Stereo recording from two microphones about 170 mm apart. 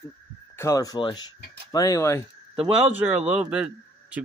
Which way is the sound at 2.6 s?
10° right (ahead or behind).